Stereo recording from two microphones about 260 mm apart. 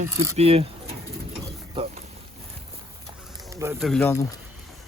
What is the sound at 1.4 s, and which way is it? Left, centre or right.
Mechanisms, right.